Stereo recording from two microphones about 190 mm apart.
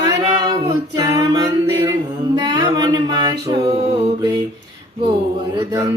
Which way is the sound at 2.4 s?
20° right (ahead or behind).